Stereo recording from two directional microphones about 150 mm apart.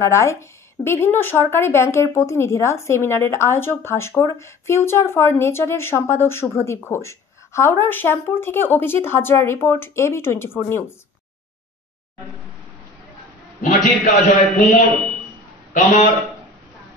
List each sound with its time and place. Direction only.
0.0 s speech: 20° left (ahead or behind)
13.7 s a man's voice: centre (ahead or behind)
15.7 s a man's voice: 50° left (ahead or behind)